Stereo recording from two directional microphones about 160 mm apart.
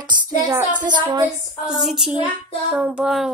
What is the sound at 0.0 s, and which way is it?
Speech, 25° right (ahead or behind).